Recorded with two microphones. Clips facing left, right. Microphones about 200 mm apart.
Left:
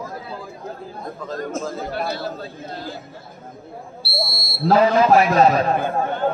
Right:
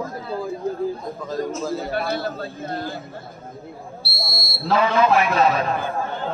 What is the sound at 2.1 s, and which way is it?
Speech, 55° right (ahead or behind).